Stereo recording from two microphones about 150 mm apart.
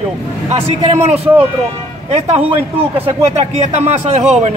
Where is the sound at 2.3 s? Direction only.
40° right (ahead or behind).